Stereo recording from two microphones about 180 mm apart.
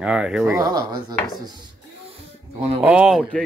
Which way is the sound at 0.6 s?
20° right (ahead or behind).